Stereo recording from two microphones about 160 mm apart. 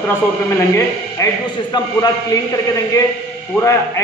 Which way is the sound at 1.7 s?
25° left (ahead or behind).